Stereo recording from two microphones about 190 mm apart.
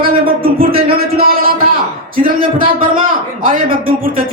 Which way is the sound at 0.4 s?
50° right (ahead or behind).